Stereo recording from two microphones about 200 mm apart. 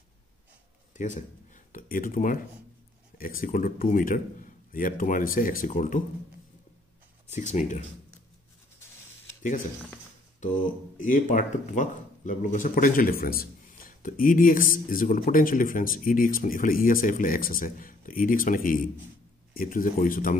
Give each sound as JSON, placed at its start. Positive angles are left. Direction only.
{"t": 0.9, "sound": "speech", "side_deg": 40}
{"t": 7.2, "sound": "speech", "side_deg": 35}
{"t": 10.4, "sound": "speech", "side_deg": 40}